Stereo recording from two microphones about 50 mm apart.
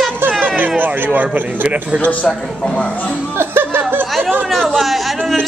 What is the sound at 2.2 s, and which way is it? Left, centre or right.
Speech, centre.